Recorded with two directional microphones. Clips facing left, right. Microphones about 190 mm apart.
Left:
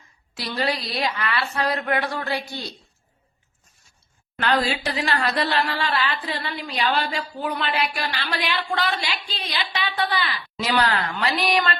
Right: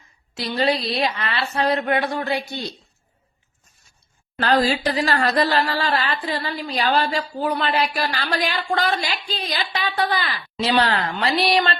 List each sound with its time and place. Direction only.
0.3 s a woman's voice: 25° right (ahead or behind)
4.6 s a woman's voice: 40° right (ahead or behind)
10.6 s a woman's voice: 30° right (ahead or behind)